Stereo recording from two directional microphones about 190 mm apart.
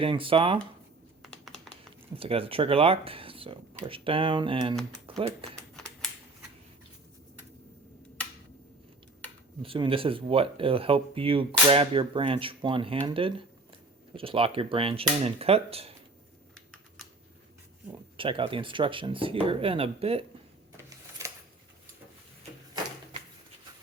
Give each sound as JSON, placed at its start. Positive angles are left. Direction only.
{"t": 0.0, "sound": "speech", "side_deg": -30}
{"t": 1.2, "sound": "computer keyboard", "side_deg": 0}
{"t": 2.1, "sound": "speech", "side_deg": -30}
{"t": 9.6, "sound": "speech", "side_deg": -25}
{"t": 18.2, "sound": "speech", "side_deg": -25}